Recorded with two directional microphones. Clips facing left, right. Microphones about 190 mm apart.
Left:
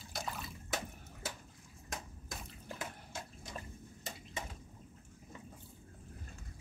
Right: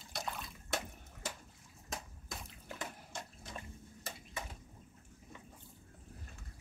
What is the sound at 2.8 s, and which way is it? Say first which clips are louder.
Water: right 1 dB; 5° left (ahead or behind).